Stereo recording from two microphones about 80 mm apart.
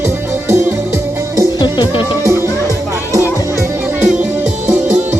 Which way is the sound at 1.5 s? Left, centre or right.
Left.